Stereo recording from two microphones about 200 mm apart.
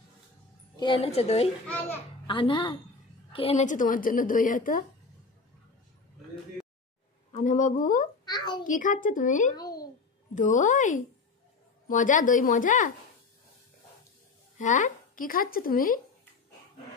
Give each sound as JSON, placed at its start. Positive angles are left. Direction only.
{"t": 0.7, "sound": "a woman's voice", "side_deg": 25}
{"t": 7.3, "sound": "a woman's voice", "side_deg": 40}
{"t": 8.3, "sound": "a woman's voice", "side_deg": 20}
{"t": 8.6, "sound": "a woman's voice", "side_deg": 40}
{"t": 9.6, "sound": "a sound", "side_deg": 20}
{"t": 10.3, "sound": "a woman's voice", "side_deg": 40}
{"t": 14.6, "sound": "speech", "side_deg": 40}